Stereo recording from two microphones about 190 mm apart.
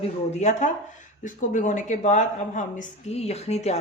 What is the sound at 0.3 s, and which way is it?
Speech, 40° left (ahead or behind).